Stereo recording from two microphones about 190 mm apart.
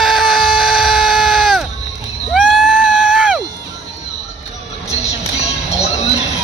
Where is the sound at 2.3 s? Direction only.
Centre (ahead or behind).